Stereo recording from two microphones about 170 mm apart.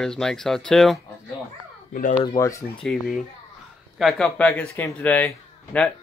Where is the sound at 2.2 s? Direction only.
20° left (ahead or behind).